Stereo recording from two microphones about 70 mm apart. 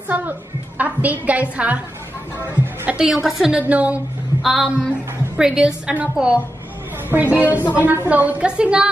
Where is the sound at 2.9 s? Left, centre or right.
Centre.